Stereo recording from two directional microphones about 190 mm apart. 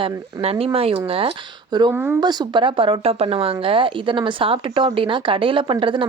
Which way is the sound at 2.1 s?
20° right (ahead or behind).